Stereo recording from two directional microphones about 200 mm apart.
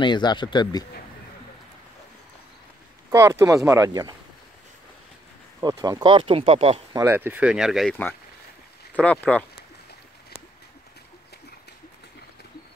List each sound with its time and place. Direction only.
0.0 s speech: 20° left (ahead or behind)
3.1 s speech: 15° right (ahead or behind)
5.6 s speech: 20° right (ahead or behind)
7.0 s speech: 10° right (ahead or behind); by 9.5 s 5° left (ahead or behind)